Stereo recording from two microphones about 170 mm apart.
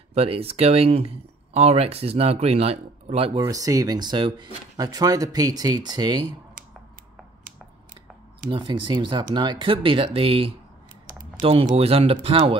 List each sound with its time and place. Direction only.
0.1 s speech: 35° right (ahead or behind)
3.4 s speech: 20° right (ahead or behind)
8.5 s speech: 30° right (ahead or behind)
11.7 s speech: 35° right (ahead or behind)